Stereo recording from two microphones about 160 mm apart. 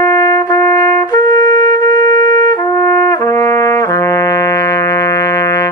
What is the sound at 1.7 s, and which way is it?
Shofar, 25° left (ahead or behind).